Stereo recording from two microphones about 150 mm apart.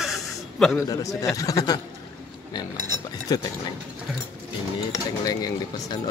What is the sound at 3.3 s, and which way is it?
Speech, 25° left (ahead or behind).